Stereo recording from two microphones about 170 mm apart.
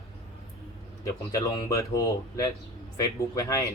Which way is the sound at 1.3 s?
20° left (ahead or behind).